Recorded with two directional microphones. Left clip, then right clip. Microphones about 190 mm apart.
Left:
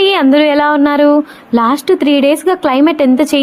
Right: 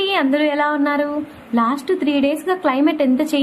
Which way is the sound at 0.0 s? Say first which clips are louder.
Left 8 dB; 50° left (ahead or behind).